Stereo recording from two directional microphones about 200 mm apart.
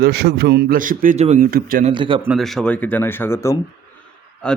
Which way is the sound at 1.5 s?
45° right (ahead or behind).